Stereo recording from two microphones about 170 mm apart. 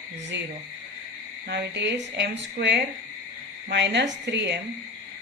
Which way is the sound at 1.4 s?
85° right.